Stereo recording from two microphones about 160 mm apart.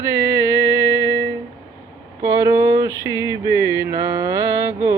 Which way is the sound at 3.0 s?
20° right (ahead or behind).